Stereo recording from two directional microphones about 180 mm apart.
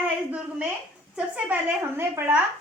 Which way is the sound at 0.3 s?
5° right (ahead or behind).